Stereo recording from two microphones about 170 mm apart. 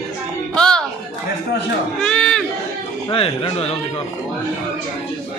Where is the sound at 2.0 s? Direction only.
5° left (ahead or behind).